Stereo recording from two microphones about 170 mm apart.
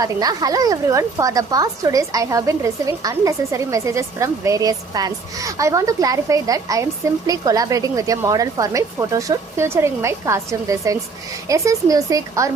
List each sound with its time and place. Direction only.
0.0 s a woman's voice: 20° right (ahead or behind)